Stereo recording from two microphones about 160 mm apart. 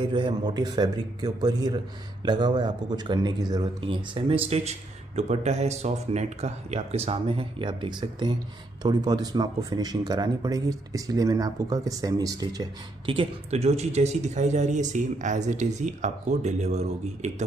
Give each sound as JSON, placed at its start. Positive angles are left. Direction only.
{"t": 0.1, "sound": "a man's voice", "side_deg": -30}